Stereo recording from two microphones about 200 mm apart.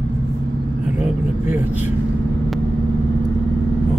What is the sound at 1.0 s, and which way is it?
Vehicle, 10° right (ahead or behind).